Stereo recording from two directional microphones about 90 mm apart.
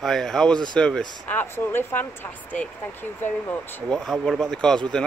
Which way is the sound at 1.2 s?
25° left (ahead or behind).